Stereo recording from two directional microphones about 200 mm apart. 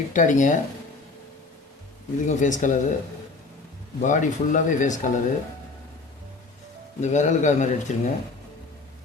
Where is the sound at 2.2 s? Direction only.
40° left (ahead or behind).